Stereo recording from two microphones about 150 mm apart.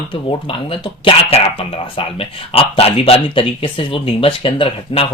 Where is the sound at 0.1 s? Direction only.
35° left (ahead or behind).